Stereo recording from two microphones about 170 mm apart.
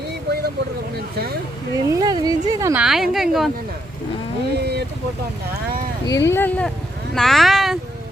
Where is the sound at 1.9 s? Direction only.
25° right (ahead or behind).